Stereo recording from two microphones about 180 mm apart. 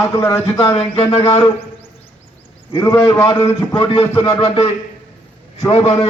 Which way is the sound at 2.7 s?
15° left (ahead or behind).